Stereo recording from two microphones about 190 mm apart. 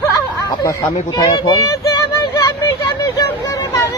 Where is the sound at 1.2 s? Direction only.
20° left (ahead or behind).